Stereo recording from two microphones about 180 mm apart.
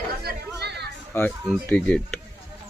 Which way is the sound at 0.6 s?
65° right (ahead or behind).